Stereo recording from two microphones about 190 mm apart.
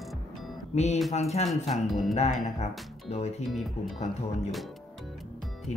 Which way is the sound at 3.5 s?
Centre (ahead or behind).